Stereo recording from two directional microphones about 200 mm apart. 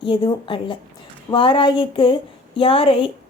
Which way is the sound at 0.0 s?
25° left (ahead or behind).